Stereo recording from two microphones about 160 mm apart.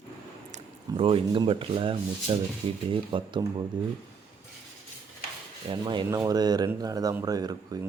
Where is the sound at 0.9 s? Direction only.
35° right (ahead or behind).